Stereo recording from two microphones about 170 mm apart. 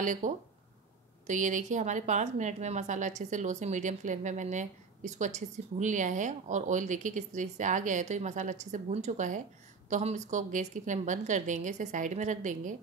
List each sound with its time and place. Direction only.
0.0 s a woman's voice: 50° right (ahead or behind)